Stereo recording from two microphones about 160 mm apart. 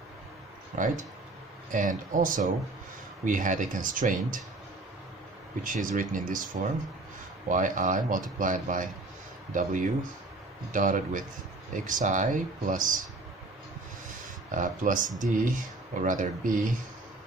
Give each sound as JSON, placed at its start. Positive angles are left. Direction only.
{"t": 0.7, "sound": "speech", "side_deg": -55}
{"t": 5.6, "sound": "speech", "side_deg": -55}
{"t": 14.5, "sound": "speech", "side_deg": -55}